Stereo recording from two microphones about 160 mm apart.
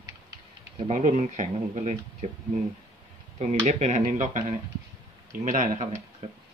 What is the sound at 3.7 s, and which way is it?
Speech, 45° right (ahead or behind).